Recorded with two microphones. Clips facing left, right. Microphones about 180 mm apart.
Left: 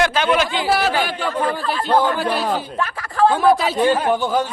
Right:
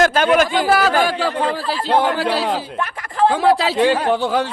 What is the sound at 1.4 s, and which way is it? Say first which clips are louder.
Speech: even; 30° right (ahead or behind).